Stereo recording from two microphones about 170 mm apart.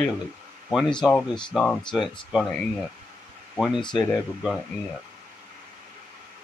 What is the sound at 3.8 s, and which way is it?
Speech, 25° left (ahead or behind).